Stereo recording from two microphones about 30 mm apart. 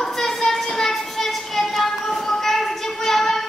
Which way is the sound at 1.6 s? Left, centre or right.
Centre.